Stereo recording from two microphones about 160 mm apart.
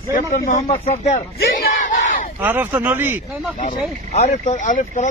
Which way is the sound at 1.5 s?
65° left (ahead or behind).